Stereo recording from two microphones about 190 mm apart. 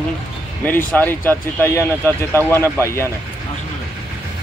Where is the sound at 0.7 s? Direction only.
10° left (ahead or behind).